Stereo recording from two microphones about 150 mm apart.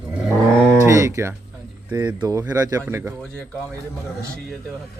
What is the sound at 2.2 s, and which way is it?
Speech, 25° right (ahead or behind).